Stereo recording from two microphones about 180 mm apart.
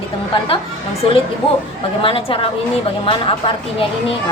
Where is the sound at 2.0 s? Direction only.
30° left (ahead or behind).